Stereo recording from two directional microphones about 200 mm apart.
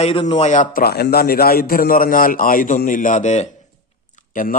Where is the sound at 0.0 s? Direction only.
30° left (ahead or behind).